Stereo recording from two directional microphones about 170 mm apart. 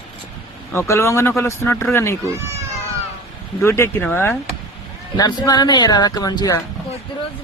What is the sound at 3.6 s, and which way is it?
Speech, 15° left (ahead or behind).